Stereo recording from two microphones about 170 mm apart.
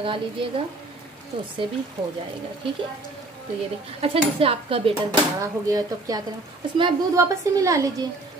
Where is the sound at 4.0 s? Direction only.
35° right (ahead or behind).